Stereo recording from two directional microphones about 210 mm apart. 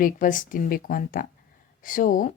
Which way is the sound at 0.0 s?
40° left (ahead or behind).